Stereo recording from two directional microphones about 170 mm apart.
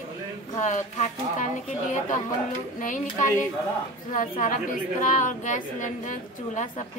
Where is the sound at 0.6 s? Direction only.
45° left (ahead or behind).